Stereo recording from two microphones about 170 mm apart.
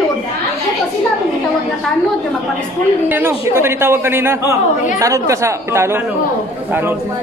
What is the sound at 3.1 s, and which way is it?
A man's voice, 15° right (ahead or behind).